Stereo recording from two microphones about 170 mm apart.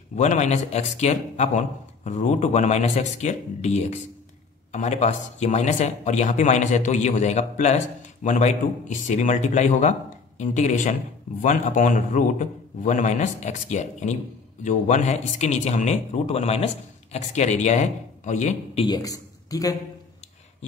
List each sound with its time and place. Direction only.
0.1 s speech: 45° left (ahead or behind)
18.9 s speech: 20° left (ahead or behind)